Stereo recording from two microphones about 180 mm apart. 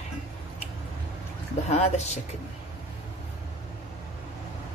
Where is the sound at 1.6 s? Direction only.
35° left (ahead or behind).